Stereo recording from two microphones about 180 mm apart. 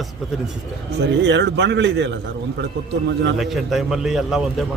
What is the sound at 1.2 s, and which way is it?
Speech, 85° right.